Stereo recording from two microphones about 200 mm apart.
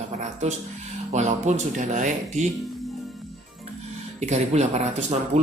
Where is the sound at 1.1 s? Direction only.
35° right (ahead or behind).